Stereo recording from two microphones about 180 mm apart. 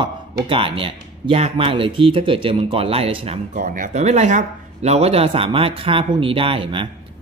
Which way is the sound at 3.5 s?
45° right (ahead or behind).